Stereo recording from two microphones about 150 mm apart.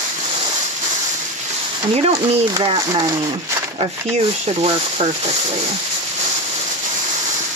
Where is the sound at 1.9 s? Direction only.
40° right (ahead or behind).